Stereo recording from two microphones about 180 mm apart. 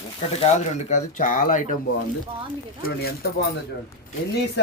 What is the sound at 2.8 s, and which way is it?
Speech, 55° left (ahead or behind).